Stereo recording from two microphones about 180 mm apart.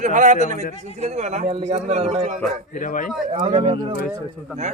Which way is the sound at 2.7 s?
45° left (ahead or behind).